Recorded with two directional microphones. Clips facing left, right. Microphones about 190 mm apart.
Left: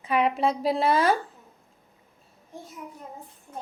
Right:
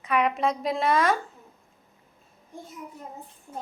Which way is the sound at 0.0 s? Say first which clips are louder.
Left 1 dB; 30° left (ahead or behind).